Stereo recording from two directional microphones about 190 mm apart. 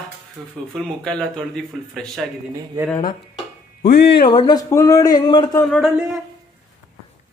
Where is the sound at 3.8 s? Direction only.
60° left (ahead or behind).